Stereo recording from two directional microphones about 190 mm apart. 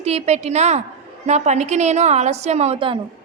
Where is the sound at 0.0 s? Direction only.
35° right (ahead or behind).